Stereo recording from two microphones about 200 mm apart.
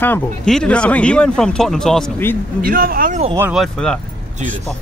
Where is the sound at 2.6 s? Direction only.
45° right (ahead or behind).